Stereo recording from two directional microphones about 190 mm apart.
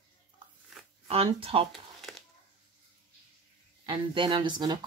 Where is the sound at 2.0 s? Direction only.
Centre (ahead or behind).